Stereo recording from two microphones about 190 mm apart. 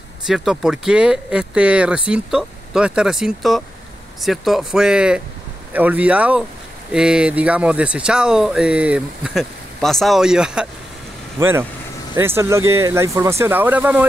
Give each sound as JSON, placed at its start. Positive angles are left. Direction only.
{"t": 0.3, "sound": "speech", "side_deg": 0}